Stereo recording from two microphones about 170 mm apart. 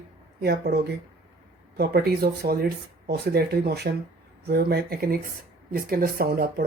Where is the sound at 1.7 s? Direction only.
65° right (ahead or behind).